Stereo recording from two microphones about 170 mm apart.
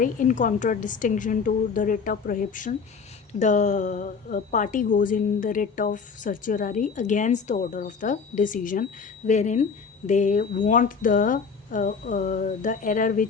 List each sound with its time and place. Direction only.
0.0 s a woman's voice: 50° left (ahead or behind)